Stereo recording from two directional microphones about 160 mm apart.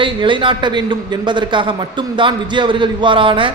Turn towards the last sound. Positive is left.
turn(degrees=-30)  # may be behind; listen again after turning